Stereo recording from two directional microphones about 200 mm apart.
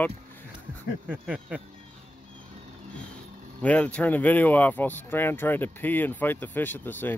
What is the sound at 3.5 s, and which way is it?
Speech, 5° left (ahead or behind).